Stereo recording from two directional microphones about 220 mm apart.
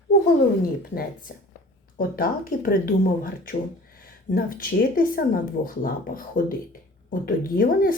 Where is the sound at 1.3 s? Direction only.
40° left (ahead or behind).